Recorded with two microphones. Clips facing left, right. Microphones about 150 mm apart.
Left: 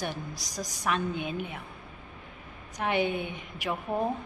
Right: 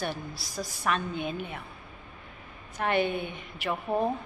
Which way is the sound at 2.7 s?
15° left (ahead or behind).